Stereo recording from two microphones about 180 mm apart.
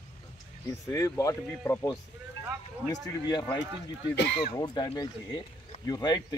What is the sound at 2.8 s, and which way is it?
Speech, 20° left (ahead or behind).